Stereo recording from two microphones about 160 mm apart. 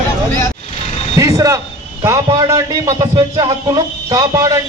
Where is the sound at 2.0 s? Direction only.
20° right (ahead or behind).